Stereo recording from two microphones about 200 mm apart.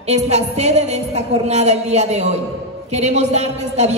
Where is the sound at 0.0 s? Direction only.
35° right (ahead or behind).